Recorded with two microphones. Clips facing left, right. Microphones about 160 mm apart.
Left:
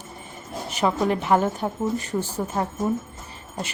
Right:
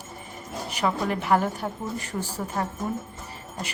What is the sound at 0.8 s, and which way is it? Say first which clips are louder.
A woman's voice: left 4 dB; 20° left (ahead or behind).